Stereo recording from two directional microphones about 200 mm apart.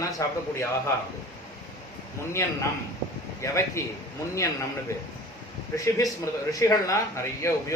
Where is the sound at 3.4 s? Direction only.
15° left (ahead or behind).